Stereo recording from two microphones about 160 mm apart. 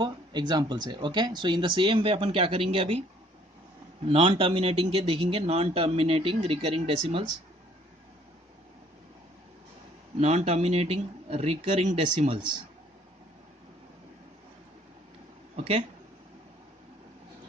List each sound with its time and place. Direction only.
0.0 s speech: 25° right (ahead or behind)
4.1 s speech: 40° right (ahead or behind)
10.2 s speech: 40° right (ahead or behind)